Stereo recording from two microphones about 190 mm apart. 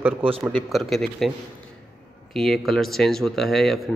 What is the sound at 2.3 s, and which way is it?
A man's voice, centre (ahead or behind).